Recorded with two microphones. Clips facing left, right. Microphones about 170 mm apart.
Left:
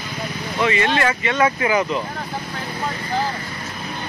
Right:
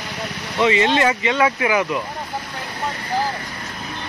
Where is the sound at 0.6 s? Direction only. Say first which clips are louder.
Right 3 dB; 20° right (ahead or behind).